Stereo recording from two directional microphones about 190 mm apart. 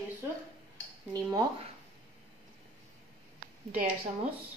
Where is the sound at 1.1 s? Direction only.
20° right (ahead or behind).